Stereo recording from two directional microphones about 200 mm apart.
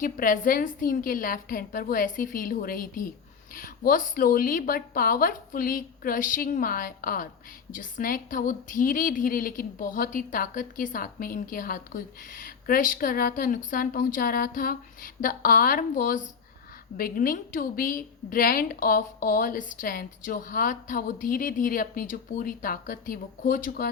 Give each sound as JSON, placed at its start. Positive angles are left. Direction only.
{"t": 0.0, "sound": "a woman's voice", "side_deg": 45}